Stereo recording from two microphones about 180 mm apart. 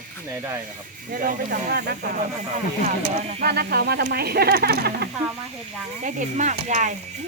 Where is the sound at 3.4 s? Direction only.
60° right (ahead or behind).